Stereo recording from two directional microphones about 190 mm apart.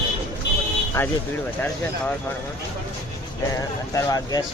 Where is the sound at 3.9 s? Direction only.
15° left (ahead or behind).